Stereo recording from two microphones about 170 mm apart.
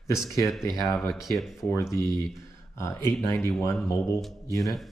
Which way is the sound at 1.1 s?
Centre (ahead or behind).